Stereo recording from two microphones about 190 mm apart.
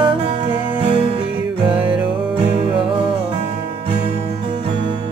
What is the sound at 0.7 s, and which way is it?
Music, 30° right (ahead or behind).